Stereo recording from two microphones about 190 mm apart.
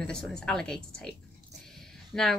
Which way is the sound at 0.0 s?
5° left (ahead or behind).